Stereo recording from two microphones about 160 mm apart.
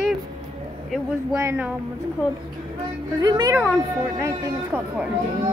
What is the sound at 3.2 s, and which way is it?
A woman's voice, 25° right (ahead or behind).